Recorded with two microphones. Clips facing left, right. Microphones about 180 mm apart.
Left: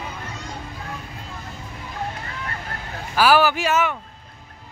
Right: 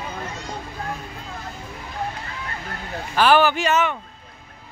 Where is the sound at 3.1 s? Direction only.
5° left (ahead or behind).